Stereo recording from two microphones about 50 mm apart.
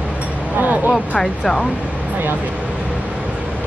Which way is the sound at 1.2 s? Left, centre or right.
Centre.